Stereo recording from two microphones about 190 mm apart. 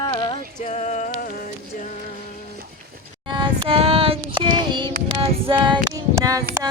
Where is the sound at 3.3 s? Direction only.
30° right (ahead or behind).